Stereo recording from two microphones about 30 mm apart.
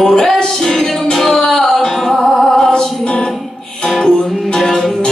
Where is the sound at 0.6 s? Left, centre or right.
Centre.